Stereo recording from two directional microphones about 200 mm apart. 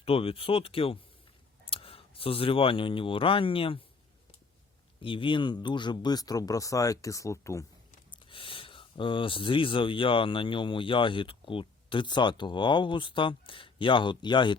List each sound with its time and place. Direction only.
0.0 s speech: 30° left (ahead or behind)
5.0 s speech: 25° left (ahead or behind)
8.1 s speech: 25° left (ahead or behind)